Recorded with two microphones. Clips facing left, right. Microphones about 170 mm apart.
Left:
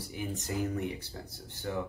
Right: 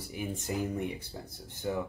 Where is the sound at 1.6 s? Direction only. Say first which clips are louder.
Right 2 dB; 15° right (ahead or behind).